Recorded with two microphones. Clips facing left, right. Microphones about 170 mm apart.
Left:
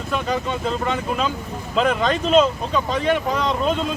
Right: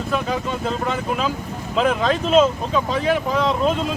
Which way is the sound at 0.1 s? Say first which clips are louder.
Left 1 dB; centre (ahead or behind).